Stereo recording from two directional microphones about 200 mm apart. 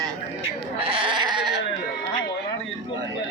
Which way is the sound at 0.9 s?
25° right (ahead or behind).